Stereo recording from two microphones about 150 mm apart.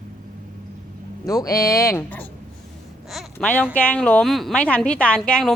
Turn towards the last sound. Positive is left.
turn(degrees=5)  # may be behind; listen again after turning